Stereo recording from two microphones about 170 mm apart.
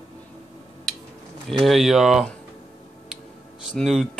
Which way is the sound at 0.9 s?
Centre (ahead or behind).